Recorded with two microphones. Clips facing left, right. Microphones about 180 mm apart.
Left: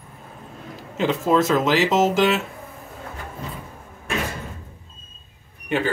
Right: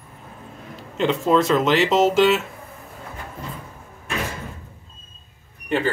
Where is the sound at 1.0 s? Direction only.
Centre (ahead or behind).